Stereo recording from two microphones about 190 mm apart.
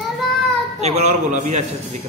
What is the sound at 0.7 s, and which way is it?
Speech, 35° right (ahead or behind).